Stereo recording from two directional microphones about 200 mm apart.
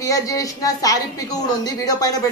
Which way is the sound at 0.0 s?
15° left (ahead or behind).